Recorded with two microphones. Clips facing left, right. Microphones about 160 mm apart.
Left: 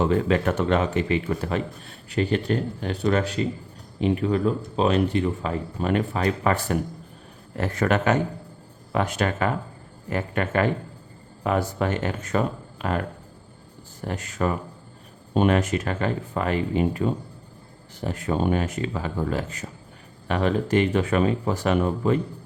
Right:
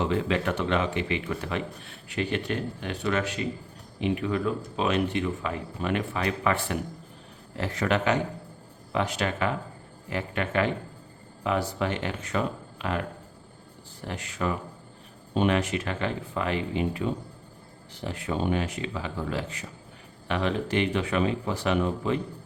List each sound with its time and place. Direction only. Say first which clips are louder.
0.0 s speech: left 5 dB; 45° left (ahead or behind)